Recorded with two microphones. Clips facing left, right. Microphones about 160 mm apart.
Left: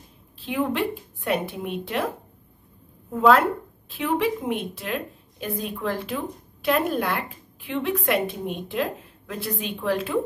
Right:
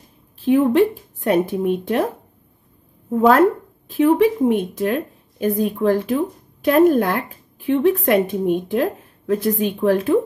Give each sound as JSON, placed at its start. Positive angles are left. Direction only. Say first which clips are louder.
{"t": 0.4, "sound": "a woman's voice", "louder": "right 10 dB", "side_deg": -45}
{"t": 3.1, "sound": "a woman's voice", "louder": "right 5 dB", "side_deg": -45}